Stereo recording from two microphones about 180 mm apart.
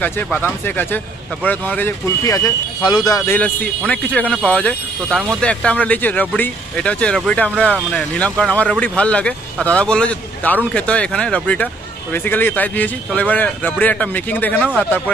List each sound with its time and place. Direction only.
0.0 s a man's voice: 10° left (ahead or behind)
3.3 s speech: 5° left (ahead or behind)